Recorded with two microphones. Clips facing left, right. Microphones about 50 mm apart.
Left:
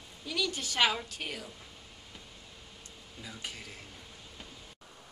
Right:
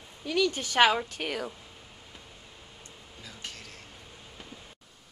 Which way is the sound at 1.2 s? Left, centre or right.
Right.